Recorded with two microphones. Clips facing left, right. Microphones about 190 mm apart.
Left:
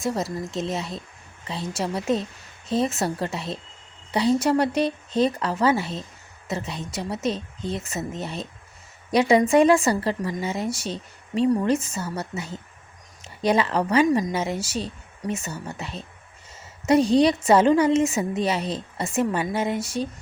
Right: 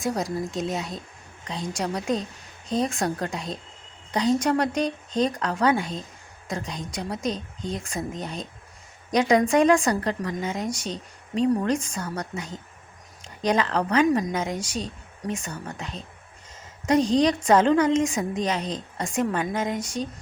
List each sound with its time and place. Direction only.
0.0 s speech: centre (ahead or behind)